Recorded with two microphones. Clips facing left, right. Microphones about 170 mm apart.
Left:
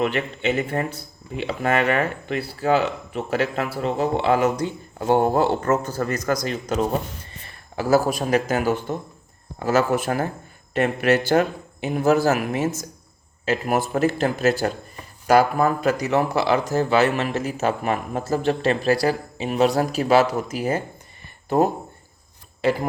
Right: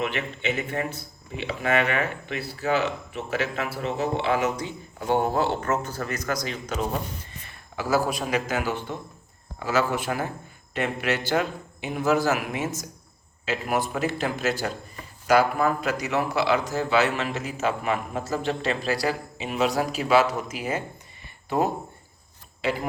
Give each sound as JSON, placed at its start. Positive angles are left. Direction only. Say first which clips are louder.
{"t": 0.0, "sound": "speech", "louder": "left 5 dB", "side_deg": 40}
{"t": 4.6, "sound": "speech", "louder": "left 6 dB", "side_deg": 50}
{"t": 7.8, "sound": "speech", "louder": "left 5 dB", "side_deg": 40}